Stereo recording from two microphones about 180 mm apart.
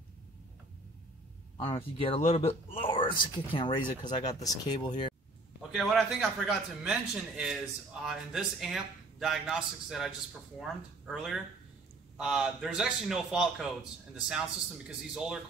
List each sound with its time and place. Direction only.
1.6 s speech: 30° left (ahead or behind)
3.8 s speech: 45° left (ahead or behind)
4.3 s speech: 20° left (ahead or behind)
5.6 s speech: centre (ahead or behind)